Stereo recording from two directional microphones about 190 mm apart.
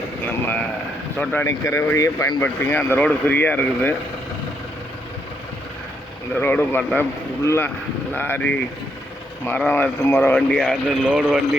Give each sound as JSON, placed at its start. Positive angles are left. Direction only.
{"t": 1.2, "sound": "speech", "side_deg": 10}
{"t": 6.4, "sound": "speech", "side_deg": 10}